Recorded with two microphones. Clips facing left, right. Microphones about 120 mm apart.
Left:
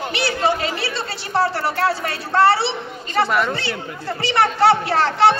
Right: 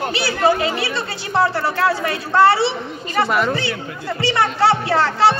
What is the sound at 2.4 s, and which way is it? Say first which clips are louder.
Speech: right 2 dB; 30° left (ahead or behind).